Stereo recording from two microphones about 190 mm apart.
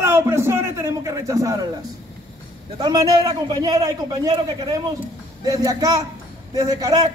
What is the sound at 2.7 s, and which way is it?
A man's voice, 20° right (ahead or behind).